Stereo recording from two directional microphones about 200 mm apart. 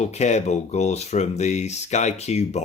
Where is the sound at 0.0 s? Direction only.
35° left (ahead or behind).